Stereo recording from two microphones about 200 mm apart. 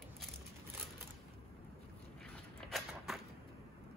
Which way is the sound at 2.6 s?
Centre (ahead or behind).